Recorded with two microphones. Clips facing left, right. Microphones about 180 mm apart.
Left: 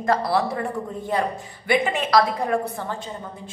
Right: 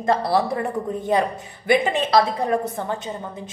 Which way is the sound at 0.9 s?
20° right (ahead or behind).